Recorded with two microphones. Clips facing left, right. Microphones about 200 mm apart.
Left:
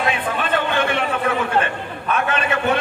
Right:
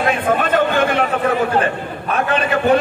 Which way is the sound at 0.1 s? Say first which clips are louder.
Right 5 dB; 45° right (ahead or behind).